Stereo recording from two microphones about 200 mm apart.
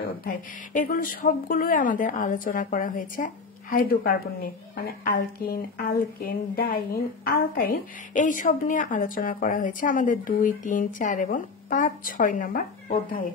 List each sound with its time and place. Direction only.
0.2 s a woman's voice: 45° left (ahead or behind)